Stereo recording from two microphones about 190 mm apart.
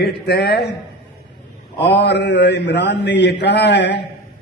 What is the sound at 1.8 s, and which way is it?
A man's voice, 65° left (ahead or behind).